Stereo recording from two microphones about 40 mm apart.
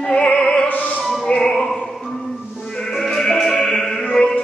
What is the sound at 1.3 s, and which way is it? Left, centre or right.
Opera, centre.